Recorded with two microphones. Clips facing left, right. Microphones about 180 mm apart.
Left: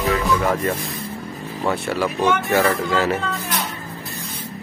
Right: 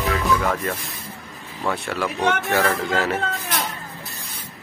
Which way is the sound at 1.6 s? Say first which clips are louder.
Left 3 dB; 5° left (ahead or behind).